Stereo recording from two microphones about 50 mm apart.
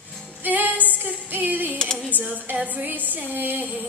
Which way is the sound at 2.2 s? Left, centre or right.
Right.